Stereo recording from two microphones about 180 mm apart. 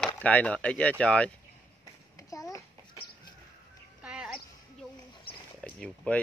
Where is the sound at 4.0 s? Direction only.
5° right (ahead or behind).